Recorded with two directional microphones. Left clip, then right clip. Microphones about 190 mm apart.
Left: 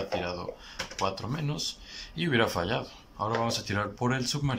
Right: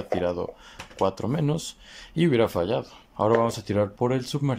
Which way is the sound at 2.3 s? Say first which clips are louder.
Right 3 dB; 20° right (ahead or behind).